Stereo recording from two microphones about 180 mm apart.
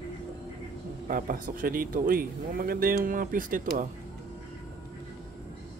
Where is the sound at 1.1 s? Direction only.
50° right (ahead or behind).